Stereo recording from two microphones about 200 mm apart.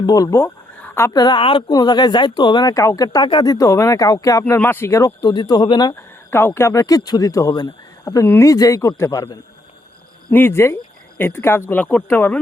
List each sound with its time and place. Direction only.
0.0 s speech: 20° left (ahead or behind)